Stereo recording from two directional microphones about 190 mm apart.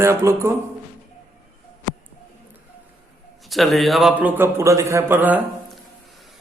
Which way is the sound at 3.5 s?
Centre (ahead or behind).